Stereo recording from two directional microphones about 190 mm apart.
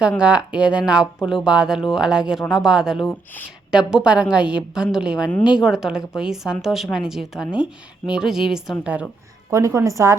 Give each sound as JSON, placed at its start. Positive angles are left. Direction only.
{"t": 0.2, "sound": "a woman's voice", "side_deg": -5}